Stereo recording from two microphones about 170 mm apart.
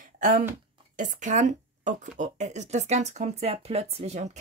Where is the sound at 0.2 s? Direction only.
50° right (ahead or behind).